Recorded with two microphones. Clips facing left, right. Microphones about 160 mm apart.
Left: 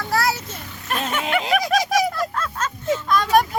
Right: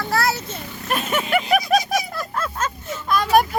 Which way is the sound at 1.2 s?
90° left.